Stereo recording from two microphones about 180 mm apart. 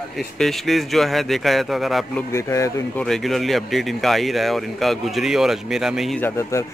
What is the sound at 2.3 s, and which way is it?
Speech, 15° left (ahead or behind).